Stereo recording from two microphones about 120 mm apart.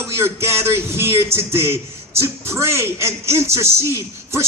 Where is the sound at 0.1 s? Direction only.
20° right (ahead or behind).